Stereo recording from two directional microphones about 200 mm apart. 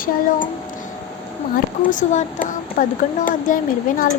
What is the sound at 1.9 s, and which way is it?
Speech, 40° left (ahead or behind).